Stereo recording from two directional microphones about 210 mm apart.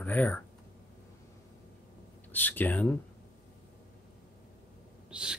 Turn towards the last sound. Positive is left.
turn(degrees=-5)  # may be behind; listen again after turning